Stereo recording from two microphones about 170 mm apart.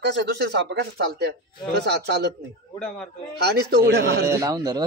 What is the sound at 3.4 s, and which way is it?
Speech, 70° right (ahead or behind).